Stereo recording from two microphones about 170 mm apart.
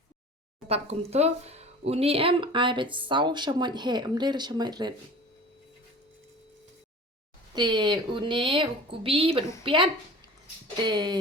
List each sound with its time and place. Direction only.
0.7 s speech: 40° right (ahead or behind)
7.5 s speech: 25° right (ahead or behind)